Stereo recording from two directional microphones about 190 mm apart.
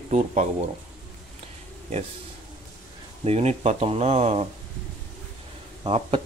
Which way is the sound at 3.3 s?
35° right (ahead or behind).